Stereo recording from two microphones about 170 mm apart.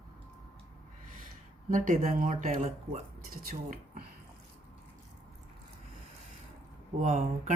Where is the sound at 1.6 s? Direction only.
55° right (ahead or behind).